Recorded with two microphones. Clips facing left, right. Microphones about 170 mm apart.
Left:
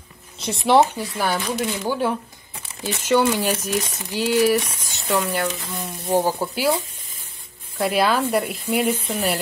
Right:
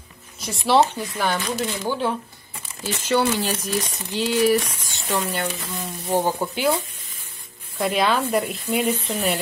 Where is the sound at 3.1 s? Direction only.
10° left (ahead or behind).